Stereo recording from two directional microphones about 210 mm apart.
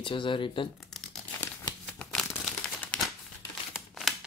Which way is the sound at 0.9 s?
Centre (ahead or behind).